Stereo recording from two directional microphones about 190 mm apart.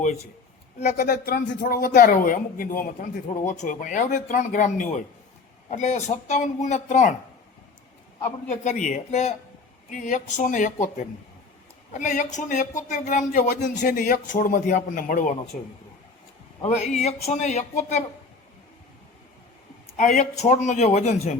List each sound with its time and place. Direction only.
0.8 s speech: 40° left (ahead or behind)
1.0 s speech: 50° left (ahead or behind)
8.4 s speech: 40° left (ahead or behind)
16.6 s speech: 35° left (ahead or behind)
20.0 s speech: 40° left (ahead or behind)